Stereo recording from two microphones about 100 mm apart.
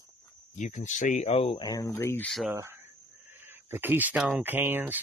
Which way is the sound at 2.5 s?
25° right (ahead or behind).